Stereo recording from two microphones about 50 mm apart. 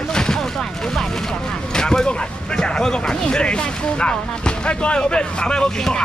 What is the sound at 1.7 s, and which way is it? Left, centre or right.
Speech, centre.